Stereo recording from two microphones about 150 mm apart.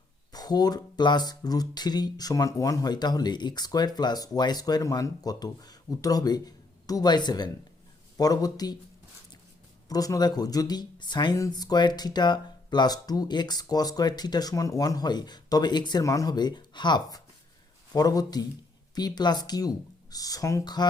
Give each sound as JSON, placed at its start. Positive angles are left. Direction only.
{"t": 0.3, "sound": "speech", "side_deg": 25}
{"t": 9.9, "sound": "speech", "side_deg": 25}